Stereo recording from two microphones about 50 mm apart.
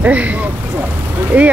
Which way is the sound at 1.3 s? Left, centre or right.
Right.